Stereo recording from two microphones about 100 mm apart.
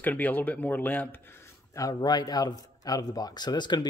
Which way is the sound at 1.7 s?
35° left (ahead or behind).